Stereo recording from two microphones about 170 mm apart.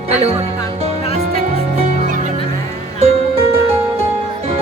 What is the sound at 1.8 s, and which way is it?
Music, 50° right (ahead or behind).